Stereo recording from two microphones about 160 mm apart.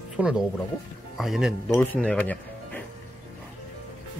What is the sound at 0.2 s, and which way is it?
Speech, 10° right (ahead or behind).